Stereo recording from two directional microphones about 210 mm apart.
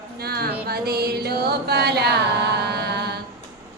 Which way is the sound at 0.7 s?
50° right (ahead or behind).